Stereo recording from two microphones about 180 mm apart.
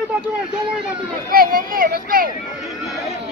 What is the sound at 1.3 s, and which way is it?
Speech, 55° right (ahead or behind).